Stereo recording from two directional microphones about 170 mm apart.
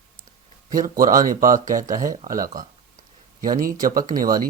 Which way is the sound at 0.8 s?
55° right (ahead or behind).